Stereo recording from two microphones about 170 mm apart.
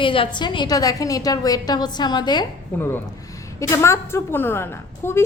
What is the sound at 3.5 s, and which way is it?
A woman's voice, 15° left (ahead or behind).